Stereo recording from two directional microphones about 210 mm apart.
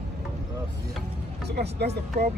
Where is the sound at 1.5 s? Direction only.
50° right (ahead or behind).